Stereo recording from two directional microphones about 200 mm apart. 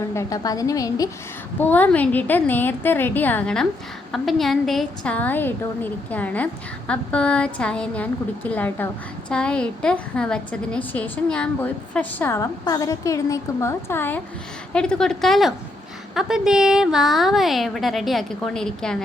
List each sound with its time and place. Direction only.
0.1 s a woman's voice: 15° left (ahead or behind)